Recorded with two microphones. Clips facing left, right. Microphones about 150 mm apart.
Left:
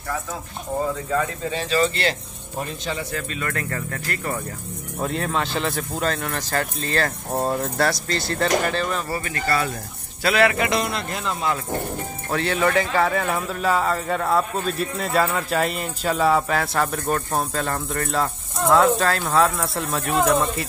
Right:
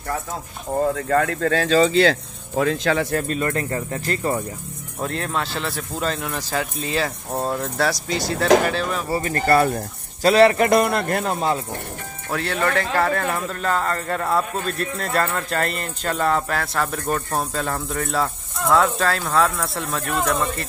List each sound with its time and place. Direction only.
0.9 s speech: 70° right (ahead or behind); by 3.1 s 90° right
3.1 s a man's voice: 45° right (ahead or behind)
3.4 s speech: 25° right (ahead or behind)
5.0 s speech: centre (ahead or behind)
7.9 s speech: 10° right (ahead or behind)
9.2 s a man's voice: 45° right (ahead or behind)
10.2 s a man's voice: 35° right (ahead or behind); by 11.3 s 55° right (ahead or behind)
12.3 s speech: centre (ahead or behind)